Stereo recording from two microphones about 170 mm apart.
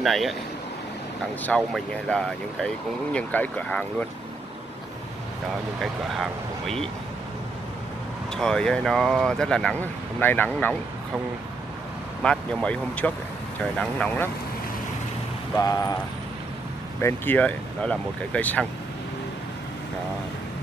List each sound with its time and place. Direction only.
0.0 s speech: centre (ahead or behind)
1.4 s speech: 5° left (ahead or behind)
5.8 s speech: centre (ahead or behind)
8.4 s speech: 5° left (ahead or behind)
12.2 s speech: 5° left (ahead or behind)
15.5 s a sound: 20° left (ahead or behind)
17.0 s speech: 10° left (ahead or behind)